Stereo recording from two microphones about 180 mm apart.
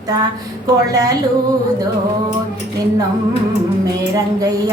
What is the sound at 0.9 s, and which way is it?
Female singing, 20° right (ahead or behind).